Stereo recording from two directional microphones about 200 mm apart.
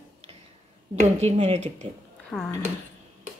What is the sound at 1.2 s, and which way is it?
Speech, 35° right (ahead or behind).